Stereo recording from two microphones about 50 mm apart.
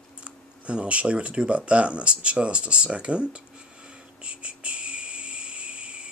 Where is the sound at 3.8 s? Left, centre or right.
Right.